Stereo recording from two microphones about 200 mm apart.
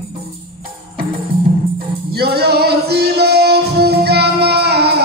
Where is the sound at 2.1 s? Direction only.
50° right (ahead or behind).